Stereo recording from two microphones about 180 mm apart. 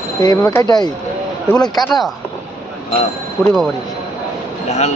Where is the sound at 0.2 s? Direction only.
15° left (ahead or behind).